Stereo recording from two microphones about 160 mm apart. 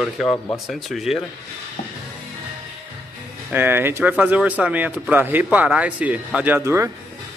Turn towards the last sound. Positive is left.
turn(degrees=-15)  # may be behind; listen again after turning